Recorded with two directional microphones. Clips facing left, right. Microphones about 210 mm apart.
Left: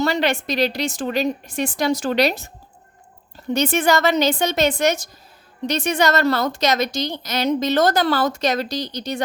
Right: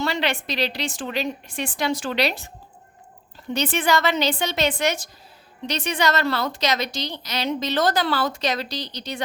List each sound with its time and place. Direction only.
0.0 s a woman's voice: 45° left (ahead or behind)
3.5 s a woman's voice: 45° left (ahead or behind)